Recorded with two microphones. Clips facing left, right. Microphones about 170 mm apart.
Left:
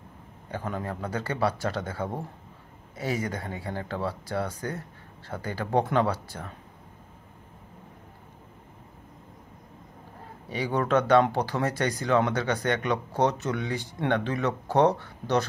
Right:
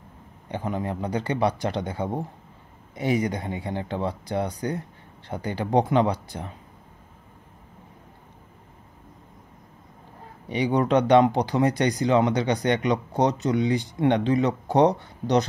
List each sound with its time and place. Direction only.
0.5 s speech: 15° right (ahead or behind)
10.5 s speech: 15° right (ahead or behind)